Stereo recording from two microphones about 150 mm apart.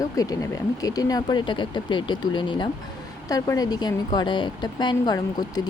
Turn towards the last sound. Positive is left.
turn(degrees=25)  # may be behind; listen again after turning